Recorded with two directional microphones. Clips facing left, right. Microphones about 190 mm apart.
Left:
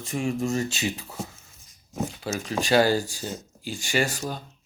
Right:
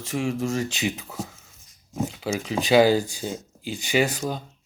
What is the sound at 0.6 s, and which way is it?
Speech, 15° right (ahead or behind).